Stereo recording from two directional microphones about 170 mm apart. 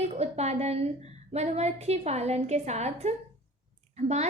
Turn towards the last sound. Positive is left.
turn(degrees=-40)  # may be behind; listen again after turning